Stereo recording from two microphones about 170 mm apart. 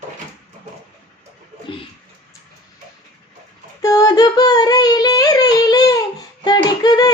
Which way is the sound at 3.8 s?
20° left (ahead or behind).